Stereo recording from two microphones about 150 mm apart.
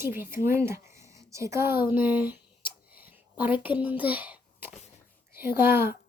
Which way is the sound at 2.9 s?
10° right (ahead or behind).